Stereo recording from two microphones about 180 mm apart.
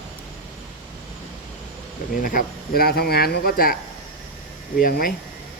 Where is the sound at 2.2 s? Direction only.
55° left (ahead or behind).